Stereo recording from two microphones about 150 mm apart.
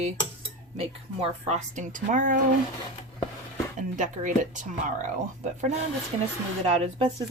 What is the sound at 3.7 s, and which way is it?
Speech, 60° right (ahead or behind).